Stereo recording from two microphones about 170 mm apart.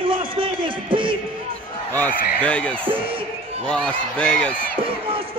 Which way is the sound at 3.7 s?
5° left (ahead or behind).